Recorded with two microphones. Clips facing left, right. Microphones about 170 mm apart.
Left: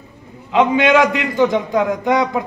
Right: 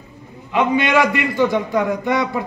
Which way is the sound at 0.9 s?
20° left (ahead or behind).